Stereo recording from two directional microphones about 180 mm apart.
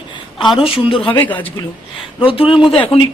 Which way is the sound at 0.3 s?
25° left (ahead or behind).